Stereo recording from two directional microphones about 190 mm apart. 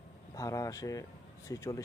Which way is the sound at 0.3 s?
15° left (ahead or behind).